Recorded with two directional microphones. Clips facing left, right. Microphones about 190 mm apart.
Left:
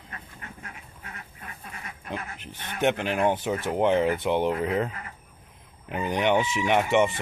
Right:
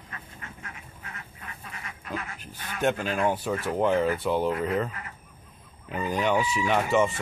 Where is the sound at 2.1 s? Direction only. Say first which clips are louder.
Even; 25° left (ahead or behind).